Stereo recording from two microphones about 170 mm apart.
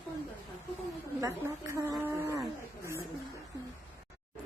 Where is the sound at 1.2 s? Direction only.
15° right (ahead or behind).